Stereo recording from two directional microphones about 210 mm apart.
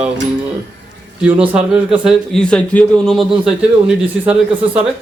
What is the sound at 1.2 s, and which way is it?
A man's voice, 5° right (ahead or behind).